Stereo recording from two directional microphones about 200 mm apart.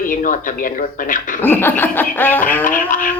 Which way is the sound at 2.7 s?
40° left (ahead or behind).